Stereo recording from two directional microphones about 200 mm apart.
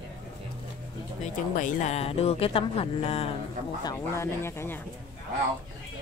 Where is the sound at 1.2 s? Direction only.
40° left (ahead or behind).